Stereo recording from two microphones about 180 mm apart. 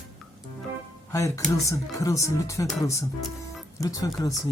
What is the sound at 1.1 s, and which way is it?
Speech, 15° left (ahead or behind).